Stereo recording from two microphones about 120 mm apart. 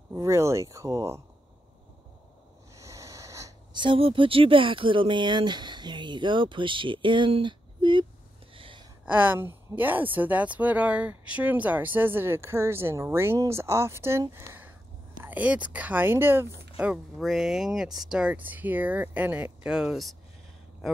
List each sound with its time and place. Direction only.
0.1 s speech: 20° right (ahead or behind)
2.8 s a sound: 25° right (ahead or behind)
3.7 s speech: 45° right (ahead or behind)
8.5 s gasp: 45° right (ahead or behind)
9.0 s a woman's voice: 15° right (ahead or behind)
17.2 s a woman's voice: centre (ahead or behind)